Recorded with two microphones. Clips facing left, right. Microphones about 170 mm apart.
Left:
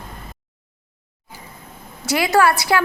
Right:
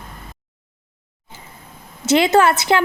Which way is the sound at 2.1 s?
25° right (ahead or behind).